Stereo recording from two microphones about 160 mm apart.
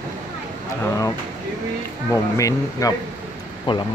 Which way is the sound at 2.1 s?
20° left (ahead or behind).